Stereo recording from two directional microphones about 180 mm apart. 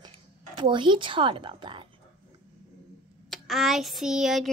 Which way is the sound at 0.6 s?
25° right (ahead or behind).